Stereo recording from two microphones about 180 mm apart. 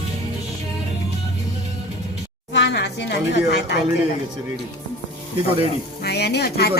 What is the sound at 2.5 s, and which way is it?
A woman's voice, 75° left (ahead or behind).